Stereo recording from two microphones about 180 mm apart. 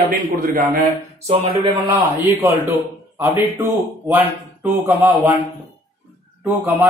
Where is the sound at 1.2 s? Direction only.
35° right (ahead or behind).